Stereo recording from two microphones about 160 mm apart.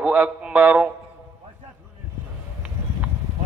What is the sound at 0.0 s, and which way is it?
Speech, 10° right (ahead or behind).